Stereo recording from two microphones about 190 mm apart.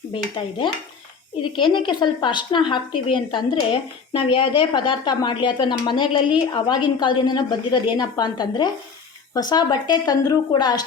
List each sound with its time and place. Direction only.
0.1 s a woman's voice: 25° left (ahead or behind)